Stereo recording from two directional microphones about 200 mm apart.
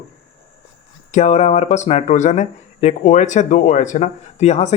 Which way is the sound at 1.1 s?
35° left (ahead or behind).